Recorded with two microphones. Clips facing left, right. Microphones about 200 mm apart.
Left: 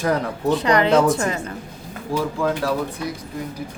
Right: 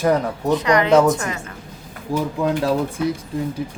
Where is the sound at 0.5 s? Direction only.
30° left (ahead or behind).